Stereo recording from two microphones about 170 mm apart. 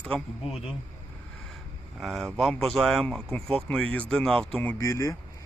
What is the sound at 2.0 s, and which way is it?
Speech, centre (ahead or behind).